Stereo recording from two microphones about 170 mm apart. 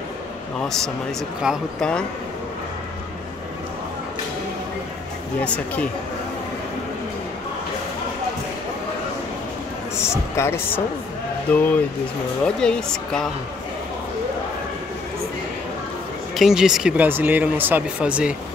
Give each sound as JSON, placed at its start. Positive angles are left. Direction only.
{"t": 0.6, "sound": "speech", "side_deg": 5}
{"t": 5.4, "sound": "speech", "side_deg": 5}
{"t": 9.9, "sound": "speech", "side_deg": 15}
{"t": 16.3, "sound": "speech", "side_deg": 0}